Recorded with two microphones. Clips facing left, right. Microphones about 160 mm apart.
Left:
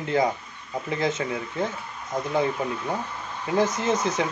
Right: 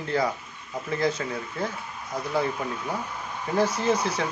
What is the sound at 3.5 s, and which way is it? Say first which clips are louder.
Speech: even; 20° left (ahead or behind).